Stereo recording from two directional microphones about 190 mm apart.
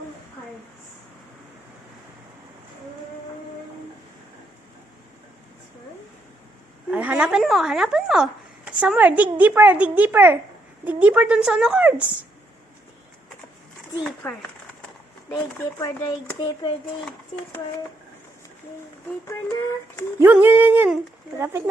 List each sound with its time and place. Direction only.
6.9 s speech: 5° right (ahead or behind)
15.8 s speech: 20° left (ahead or behind)
19.3 s speech: 15° left (ahead or behind)
20.1 s speech: 10° right (ahead or behind)